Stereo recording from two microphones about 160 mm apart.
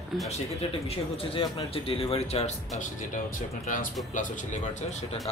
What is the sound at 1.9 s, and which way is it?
Speech, 35° left (ahead or behind).